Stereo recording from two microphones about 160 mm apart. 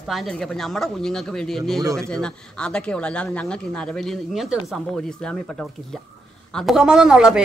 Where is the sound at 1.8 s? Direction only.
20° right (ahead or behind).